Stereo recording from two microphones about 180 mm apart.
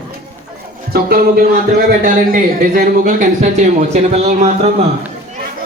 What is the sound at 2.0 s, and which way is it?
Speech, 50° right (ahead or behind).